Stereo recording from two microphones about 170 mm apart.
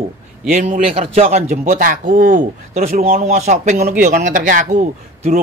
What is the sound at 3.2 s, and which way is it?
A man's voice, 40° right (ahead or behind).